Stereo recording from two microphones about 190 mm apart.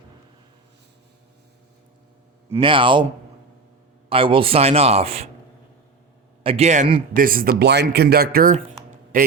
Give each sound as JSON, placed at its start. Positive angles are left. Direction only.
{"t": 2.6, "sound": "a man's voice", "side_deg": -25}
{"t": 4.1, "sound": "speech", "side_deg": -30}
{"t": 6.4, "sound": "a man's voice", "side_deg": -30}